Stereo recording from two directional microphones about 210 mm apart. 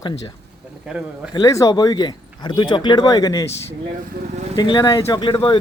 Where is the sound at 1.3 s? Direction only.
15° left (ahead or behind).